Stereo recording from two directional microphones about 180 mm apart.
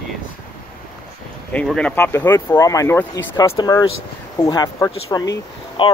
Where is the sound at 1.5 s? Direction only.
5° left (ahead or behind).